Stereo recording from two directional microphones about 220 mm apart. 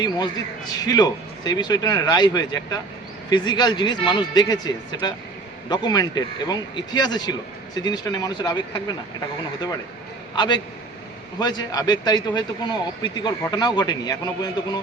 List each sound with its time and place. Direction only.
0.7 s a man's voice: 15° left (ahead or behind)
10.3 s a man's voice: 20° left (ahead or behind)